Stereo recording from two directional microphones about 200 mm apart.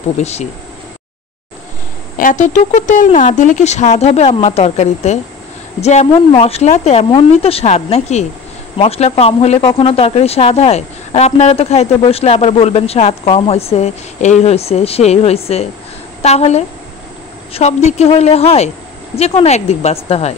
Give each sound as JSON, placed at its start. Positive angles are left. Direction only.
{"t": 0.2, "sound": "speech", "side_deg": 35}
{"t": 2.1, "sound": "speech", "side_deg": 40}